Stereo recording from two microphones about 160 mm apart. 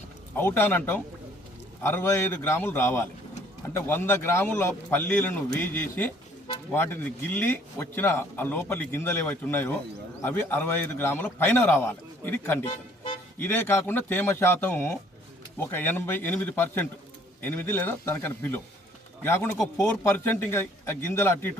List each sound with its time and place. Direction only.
0.3 s speech: 15° left (ahead or behind)